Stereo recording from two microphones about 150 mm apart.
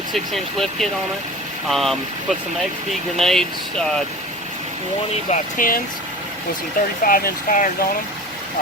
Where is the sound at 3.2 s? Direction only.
5° left (ahead or behind).